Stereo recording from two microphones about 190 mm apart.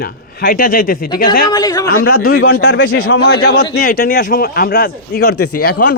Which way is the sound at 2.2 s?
90° left.